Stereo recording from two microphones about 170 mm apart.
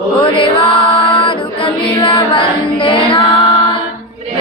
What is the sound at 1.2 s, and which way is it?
Music, 30° left (ahead or behind).